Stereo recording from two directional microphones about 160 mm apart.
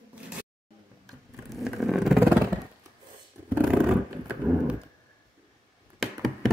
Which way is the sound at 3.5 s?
5° right (ahead or behind).